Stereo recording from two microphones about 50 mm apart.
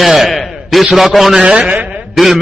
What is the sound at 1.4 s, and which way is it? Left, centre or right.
Speech, right.